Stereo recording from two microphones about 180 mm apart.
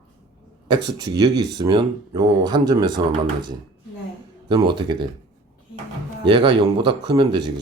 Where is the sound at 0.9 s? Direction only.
20° right (ahead or behind).